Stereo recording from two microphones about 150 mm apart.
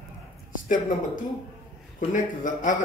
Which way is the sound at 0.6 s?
60° left (ahead or behind).